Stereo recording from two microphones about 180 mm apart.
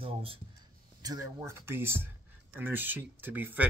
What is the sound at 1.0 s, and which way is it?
Speech, 20° right (ahead or behind).